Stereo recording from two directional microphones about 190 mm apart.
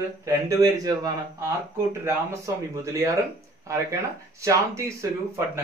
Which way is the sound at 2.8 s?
15° right (ahead or behind).